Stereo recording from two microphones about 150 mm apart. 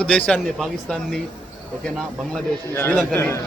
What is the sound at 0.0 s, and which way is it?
Speech, 5° left (ahead or behind).